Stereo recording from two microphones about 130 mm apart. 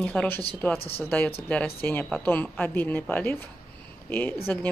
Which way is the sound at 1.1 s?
10° left (ahead or behind).